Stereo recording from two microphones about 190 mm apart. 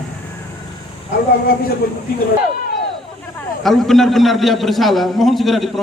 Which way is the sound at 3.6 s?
Centre (ahead or behind).